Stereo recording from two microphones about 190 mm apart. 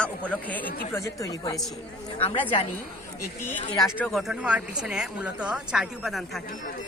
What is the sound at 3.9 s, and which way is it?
Speech, 5° left (ahead or behind).